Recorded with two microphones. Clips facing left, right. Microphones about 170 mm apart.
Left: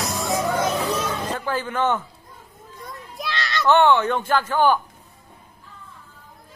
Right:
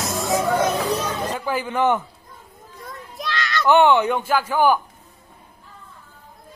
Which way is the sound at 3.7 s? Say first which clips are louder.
Right 1 dB; 15° right (ahead or behind).